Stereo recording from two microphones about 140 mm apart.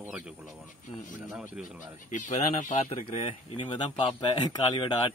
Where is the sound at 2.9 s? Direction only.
45° left (ahead or behind).